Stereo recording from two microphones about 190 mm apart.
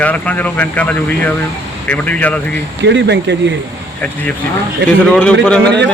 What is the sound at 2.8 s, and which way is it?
Speech, 65° right (ahead or behind).